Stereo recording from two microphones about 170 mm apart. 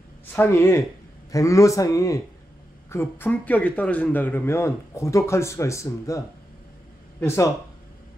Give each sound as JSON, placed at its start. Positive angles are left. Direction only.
{"t": 0.3, "sound": "a man's voice", "side_deg": 15}